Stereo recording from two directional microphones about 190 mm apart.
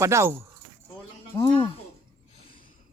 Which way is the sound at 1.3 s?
20° left (ahead or behind).